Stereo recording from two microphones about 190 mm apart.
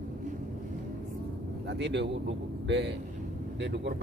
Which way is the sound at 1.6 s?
65° right (ahead or behind).